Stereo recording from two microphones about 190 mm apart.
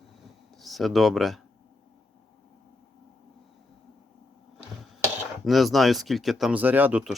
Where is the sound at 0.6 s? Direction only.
Centre (ahead or behind).